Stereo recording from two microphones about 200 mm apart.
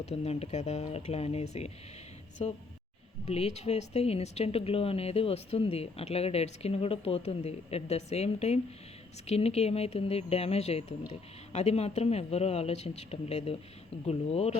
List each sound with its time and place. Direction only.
0.0 s speech: 30° left (ahead or behind)